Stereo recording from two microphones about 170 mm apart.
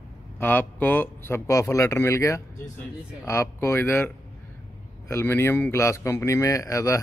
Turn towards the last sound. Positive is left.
turn(degrees=20)  # may be behind; listen again after turning